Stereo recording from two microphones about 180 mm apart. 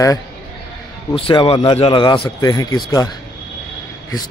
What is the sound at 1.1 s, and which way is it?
Speech, 30° left (ahead or behind).